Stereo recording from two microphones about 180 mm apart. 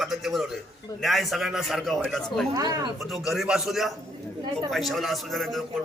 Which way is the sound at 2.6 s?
20° right (ahead or behind).